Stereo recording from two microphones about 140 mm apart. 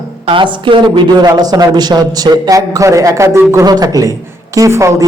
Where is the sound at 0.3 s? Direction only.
35° right (ahead or behind).